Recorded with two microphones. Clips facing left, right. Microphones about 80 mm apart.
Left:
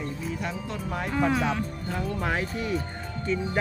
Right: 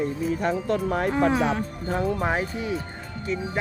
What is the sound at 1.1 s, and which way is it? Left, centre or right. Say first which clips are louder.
Speech: even; right.